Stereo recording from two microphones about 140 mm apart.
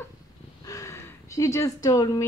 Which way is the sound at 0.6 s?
25° left (ahead or behind).